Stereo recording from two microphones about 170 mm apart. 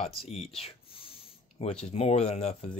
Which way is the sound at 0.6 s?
35° left (ahead or behind).